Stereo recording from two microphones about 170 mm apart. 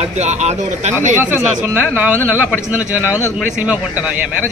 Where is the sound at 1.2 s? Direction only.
10° right (ahead or behind).